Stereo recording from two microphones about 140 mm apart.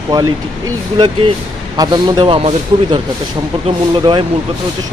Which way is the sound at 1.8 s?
30° right (ahead or behind).